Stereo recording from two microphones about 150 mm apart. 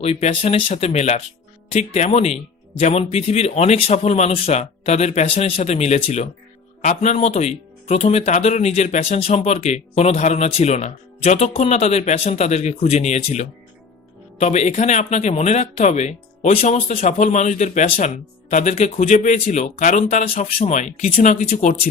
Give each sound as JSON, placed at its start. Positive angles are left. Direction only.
{"t": 0.0, "sound": "speech", "side_deg": 45}
{"t": 16.9, "sound": "speech", "side_deg": 60}
{"t": 20.2, "sound": "speech", "side_deg": 70}
{"t": 20.6, "sound": "speech", "side_deg": 50}